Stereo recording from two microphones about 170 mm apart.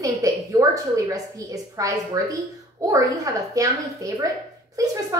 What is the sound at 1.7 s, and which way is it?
Speech, 20° right (ahead or behind).